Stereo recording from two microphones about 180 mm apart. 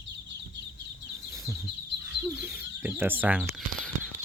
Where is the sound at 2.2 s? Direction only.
10° right (ahead or behind).